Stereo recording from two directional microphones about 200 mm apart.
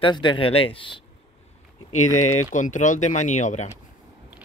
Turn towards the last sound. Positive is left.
turn(degrees=35)  # may be behind; listen again after turning